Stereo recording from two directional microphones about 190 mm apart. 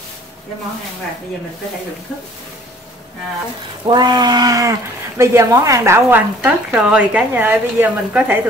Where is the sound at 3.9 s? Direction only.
25° right (ahead or behind).